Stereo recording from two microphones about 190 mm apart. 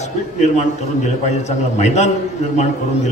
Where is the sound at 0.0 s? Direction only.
35° left (ahead or behind).